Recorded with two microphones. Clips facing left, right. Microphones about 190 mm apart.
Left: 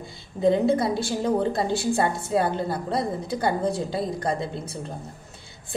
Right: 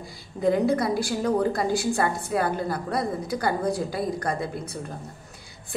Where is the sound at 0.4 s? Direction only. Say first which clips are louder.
Left 2 dB; 25° left (ahead or behind).